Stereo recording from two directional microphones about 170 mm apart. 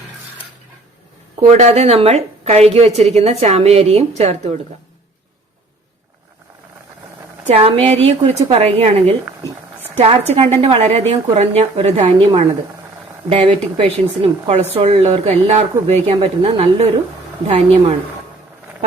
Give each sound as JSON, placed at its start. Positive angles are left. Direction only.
{"t": 1.4, "sound": "a woman's voice", "side_deg": -40}
{"t": 7.4, "sound": "a woman's voice", "side_deg": -35}